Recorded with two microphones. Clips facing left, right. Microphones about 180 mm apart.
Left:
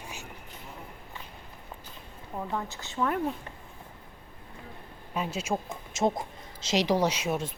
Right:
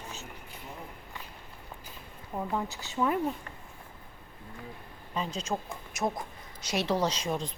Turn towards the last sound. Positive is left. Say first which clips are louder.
# left 2 dB
turn(degrees=5)  # may be behind; listen again after turning